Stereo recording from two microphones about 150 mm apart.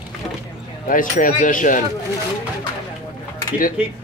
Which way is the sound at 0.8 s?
65° left (ahead or behind).